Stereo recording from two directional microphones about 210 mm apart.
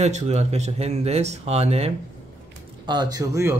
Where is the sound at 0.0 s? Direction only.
30° right (ahead or behind).